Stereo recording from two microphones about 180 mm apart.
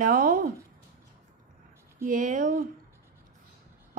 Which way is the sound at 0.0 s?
50° right (ahead or behind).